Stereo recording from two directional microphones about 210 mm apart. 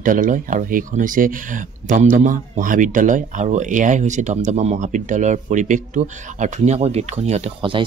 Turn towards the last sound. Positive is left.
turn(degrees=-25)  # may be behind; listen again after turning